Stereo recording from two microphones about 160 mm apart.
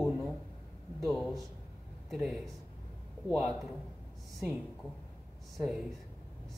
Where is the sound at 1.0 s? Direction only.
Centre (ahead or behind).